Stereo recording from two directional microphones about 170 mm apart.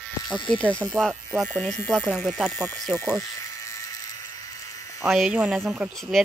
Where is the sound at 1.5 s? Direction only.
10° left (ahead or behind).